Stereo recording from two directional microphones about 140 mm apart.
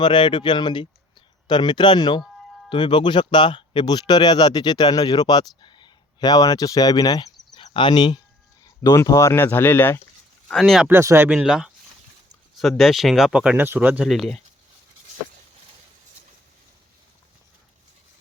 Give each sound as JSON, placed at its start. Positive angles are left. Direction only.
{"t": 0.0, "sound": "speech", "side_deg": 35}
{"t": 10.5, "sound": "speech", "side_deg": 0}
{"t": 10.8, "sound": "speech", "side_deg": -15}
{"t": 11.3, "sound": "speech", "side_deg": -5}